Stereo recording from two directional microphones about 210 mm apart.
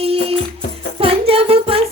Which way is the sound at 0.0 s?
30° right (ahead or behind).